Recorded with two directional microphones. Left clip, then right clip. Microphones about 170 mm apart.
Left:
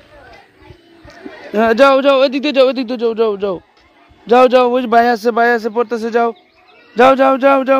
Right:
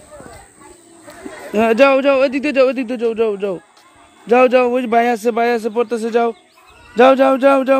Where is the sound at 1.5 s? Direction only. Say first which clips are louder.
Left 2 dB; 10° left (ahead or behind).